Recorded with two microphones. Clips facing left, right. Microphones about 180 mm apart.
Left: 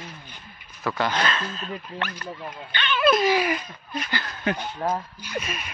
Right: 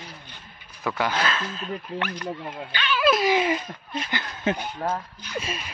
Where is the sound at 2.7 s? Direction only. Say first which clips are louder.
Left 1 dB; 5° right (ahead or behind).